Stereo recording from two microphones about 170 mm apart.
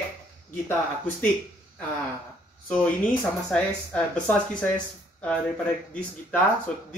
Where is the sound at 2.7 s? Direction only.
10° left (ahead or behind).